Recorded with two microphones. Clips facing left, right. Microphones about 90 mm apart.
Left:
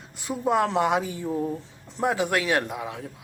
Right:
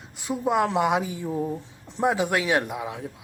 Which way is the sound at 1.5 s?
20° right (ahead or behind).